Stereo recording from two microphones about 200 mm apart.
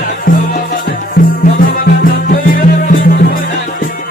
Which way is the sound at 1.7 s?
40° left (ahead or behind).